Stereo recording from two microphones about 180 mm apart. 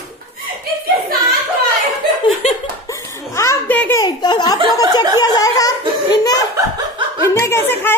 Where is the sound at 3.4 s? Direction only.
15° left (ahead or behind).